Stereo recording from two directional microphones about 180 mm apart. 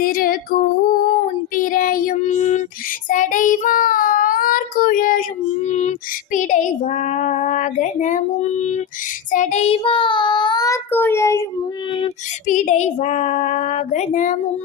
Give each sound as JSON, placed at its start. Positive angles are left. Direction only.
{"t": 0.0, "sound": "female singing", "side_deg": 50}
{"t": 1.1, "sound": "child singing", "side_deg": 45}
{"t": 5.6, "sound": "a sound", "side_deg": 40}
{"t": 6.3, "sound": "child singing", "side_deg": 45}
{"t": 12.5, "sound": "female singing", "side_deg": 40}